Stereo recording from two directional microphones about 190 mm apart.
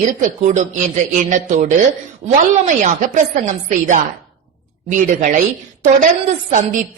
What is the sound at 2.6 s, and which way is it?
A woman's voice, 40° right (ahead or behind).